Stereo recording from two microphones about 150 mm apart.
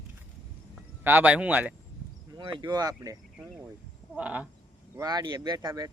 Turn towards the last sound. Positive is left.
turn(degrees=-25)  # may be behind; listen again after turning